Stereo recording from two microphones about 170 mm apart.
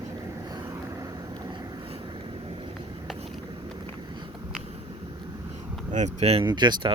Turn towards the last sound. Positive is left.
turn(degrees=-30)  # may be behind; listen again after turning